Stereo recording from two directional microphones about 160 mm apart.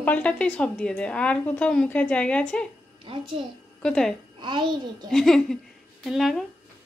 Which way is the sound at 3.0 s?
35° right (ahead or behind).